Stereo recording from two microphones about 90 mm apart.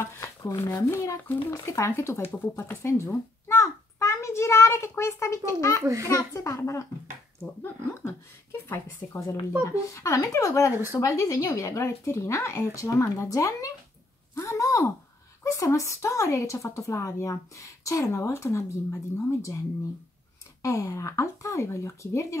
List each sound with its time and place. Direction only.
0.0 s a child's voice: 35° left (ahead or behind)
8.0 s speech: 30° left (ahead or behind)
14.3 s a sound: 35° left (ahead or behind)
15.4 s speech: 35° left (ahead or behind)
20.6 s speech: 35° left (ahead or behind)